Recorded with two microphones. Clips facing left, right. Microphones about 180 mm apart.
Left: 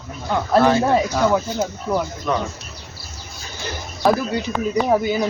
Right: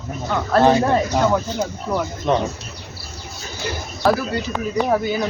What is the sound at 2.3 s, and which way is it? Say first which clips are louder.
Speech: right 4 dB; 25° right (ahead or behind).